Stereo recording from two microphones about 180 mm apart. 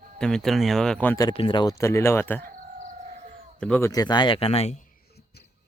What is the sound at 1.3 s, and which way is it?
Speech, 25° left (ahead or behind).